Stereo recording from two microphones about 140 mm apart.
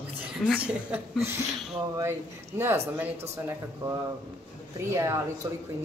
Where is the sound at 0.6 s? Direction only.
10° right (ahead or behind).